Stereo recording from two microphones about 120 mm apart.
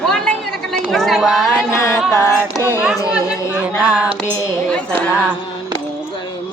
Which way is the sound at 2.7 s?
10° right (ahead or behind).